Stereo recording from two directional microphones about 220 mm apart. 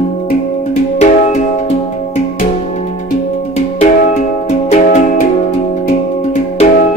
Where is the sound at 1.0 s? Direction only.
30° left (ahead or behind).